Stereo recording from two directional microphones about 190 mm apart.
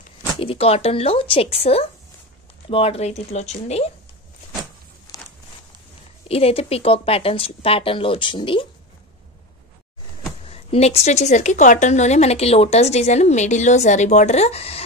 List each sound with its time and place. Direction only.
0.4 s speech: 30° left (ahead or behind)
5.1 s walk: 20° left (ahead or behind)
6.2 s speech: 30° left (ahead or behind)
10.5 s speech: 30° left (ahead or behind)